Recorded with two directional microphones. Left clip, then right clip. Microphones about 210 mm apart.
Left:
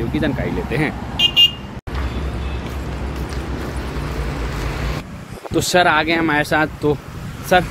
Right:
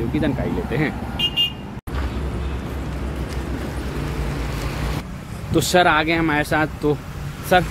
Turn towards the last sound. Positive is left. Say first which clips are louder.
# left 2 dB
turn(degrees=0)  # may be behind; listen again after turning